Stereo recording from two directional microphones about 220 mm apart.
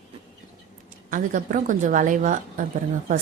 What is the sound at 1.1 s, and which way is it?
Speech, 35° right (ahead or behind).